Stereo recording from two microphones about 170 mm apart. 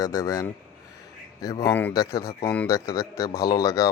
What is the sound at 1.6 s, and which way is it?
Speech, 15° left (ahead or behind).